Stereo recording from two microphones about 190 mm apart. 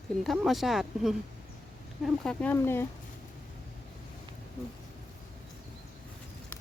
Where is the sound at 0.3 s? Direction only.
Centre (ahead or behind).